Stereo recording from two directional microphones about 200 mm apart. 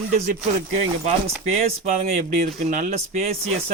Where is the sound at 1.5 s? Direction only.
35° right (ahead or behind).